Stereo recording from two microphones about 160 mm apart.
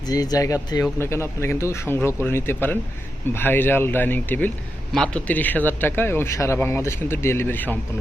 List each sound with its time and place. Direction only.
0.0 s a man's voice: 25° left (ahead or behind)